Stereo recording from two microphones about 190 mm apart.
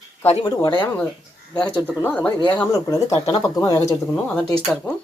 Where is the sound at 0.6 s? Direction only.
25° left (ahead or behind).